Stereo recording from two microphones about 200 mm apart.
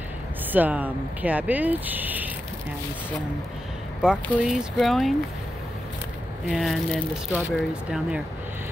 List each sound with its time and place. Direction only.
0.5 s speech: 10° right (ahead or behind)
4.0 s speech: 5° right (ahead or behind)
6.4 s speech: centre (ahead or behind)